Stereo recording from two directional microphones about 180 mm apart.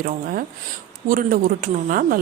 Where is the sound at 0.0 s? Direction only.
55° right (ahead or behind).